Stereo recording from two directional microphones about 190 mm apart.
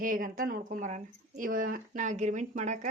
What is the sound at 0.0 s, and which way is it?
Speech, 45° right (ahead or behind).